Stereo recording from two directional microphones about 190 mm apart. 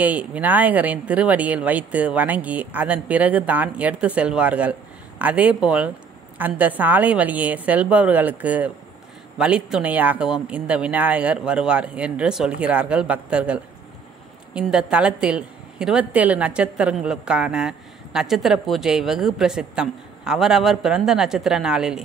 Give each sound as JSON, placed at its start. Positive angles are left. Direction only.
{"t": 0.0, "sound": "a woman's voice", "side_deg": -10}